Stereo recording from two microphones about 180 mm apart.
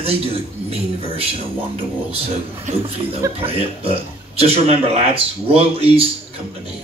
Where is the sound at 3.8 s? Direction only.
35° right (ahead or behind).